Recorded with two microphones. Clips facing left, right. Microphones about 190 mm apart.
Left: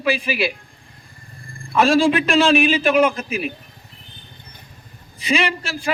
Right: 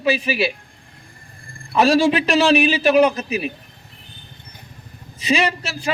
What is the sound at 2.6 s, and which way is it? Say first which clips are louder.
Speech: right 1 dB; 35° right (ahead or behind).